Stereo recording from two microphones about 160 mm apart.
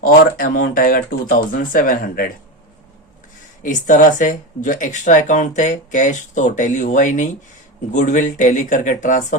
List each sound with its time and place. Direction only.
0.0 s speech: 60° left (ahead or behind)
3.6 s speech: 55° left (ahead or behind)